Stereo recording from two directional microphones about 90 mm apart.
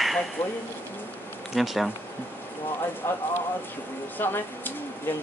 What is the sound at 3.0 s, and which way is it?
Speech, 30° left (ahead or behind).